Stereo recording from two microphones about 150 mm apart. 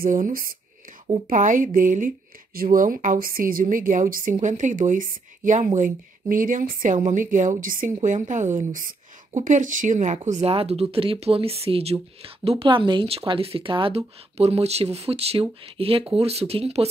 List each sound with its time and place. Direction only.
0.0 s speech: 65° right (ahead or behind)
1.2 s speech: 60° right (ahead or behind); by 16.8 s 45° right (ahead or behind)